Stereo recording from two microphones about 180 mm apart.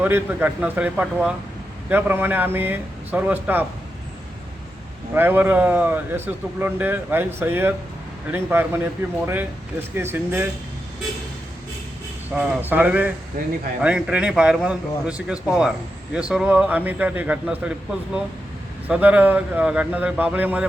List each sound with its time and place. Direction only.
0.0 s a man's voice: 10° right (ahead or behind)
5.1 s a man's voice: 10° right (ahead or behind)
12.3 s a man's voice: 10° right (ahead or behind)
13.4 s speech: 55° right (ahead or behind)
13.8 s a man's voice: 5° right (ahead or behind)